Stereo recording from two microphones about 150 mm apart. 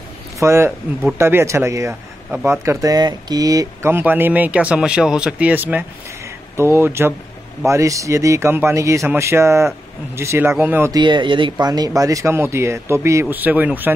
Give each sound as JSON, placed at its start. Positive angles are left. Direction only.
{"t": 0.4, "sound": "speech", "side_deg": -20}
{"t": 10.9, "sound": "speech", "side_deg": -30}